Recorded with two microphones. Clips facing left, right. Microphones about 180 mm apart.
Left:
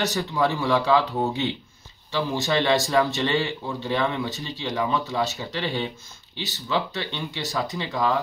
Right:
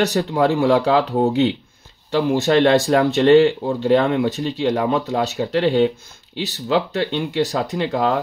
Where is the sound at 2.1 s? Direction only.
60° right (ahead or behind).